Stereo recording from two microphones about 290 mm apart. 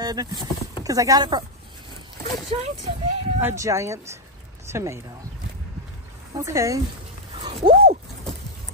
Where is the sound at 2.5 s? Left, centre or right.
Right.